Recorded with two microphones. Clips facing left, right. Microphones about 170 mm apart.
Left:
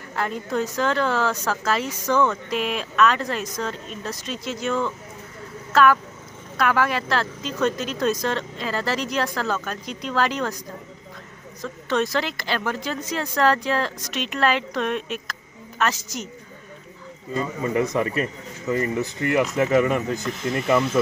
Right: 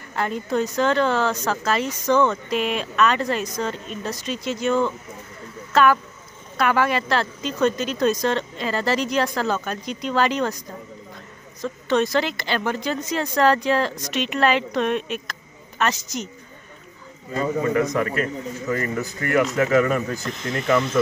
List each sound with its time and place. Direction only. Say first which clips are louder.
0.1 s speech: right 2 dB; centre (ahead or behind)
11.6 s speech: right 3 dB; centre (ahead or behind)
17.7 s speech: left 3 dB; 25° left (ahead or behind)
18.9 s speech: even; centre (ahead or behind)